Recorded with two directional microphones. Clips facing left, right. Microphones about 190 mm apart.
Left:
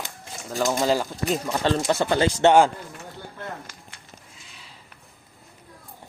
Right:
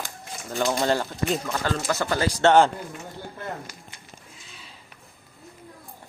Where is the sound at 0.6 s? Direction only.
5° left (ahead or behind).